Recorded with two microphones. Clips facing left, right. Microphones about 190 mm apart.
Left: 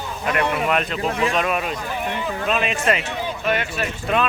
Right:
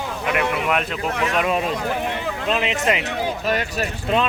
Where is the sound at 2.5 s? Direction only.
20° right (ahead or behind).